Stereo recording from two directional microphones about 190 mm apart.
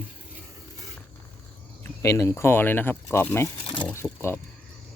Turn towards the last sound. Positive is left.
turn(degrees=10)  # may be behind; listen again after turning